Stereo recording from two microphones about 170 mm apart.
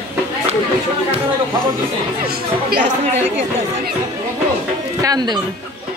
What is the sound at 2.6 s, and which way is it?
Speech, 55° right (ahead or behind).